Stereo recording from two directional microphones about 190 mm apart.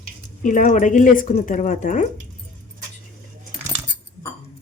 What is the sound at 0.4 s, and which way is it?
Speech, 40° left (ahead or behind).